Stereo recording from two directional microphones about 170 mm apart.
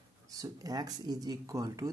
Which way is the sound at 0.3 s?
20° right (ahead or behind).